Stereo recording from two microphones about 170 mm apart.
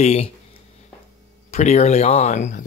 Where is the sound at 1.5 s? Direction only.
40° left (ahead or behind).